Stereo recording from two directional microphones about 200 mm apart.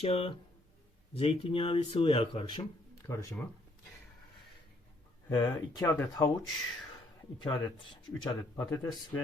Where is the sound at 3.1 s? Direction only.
15° left (ahead or behind).